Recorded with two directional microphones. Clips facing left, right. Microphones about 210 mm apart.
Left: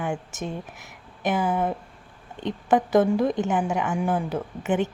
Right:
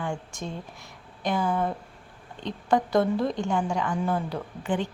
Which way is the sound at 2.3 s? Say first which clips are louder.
Left 3 dB; 20° left (ahead or behind).